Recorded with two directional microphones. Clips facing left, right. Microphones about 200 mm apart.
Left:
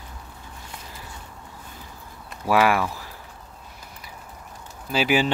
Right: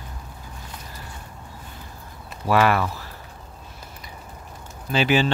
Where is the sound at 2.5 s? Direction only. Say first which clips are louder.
Even; 10° left (ahead or behind).